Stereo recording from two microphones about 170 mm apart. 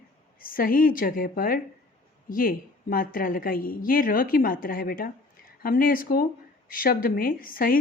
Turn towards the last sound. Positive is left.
turn(degrees=55)  # may be behind; listen again after turning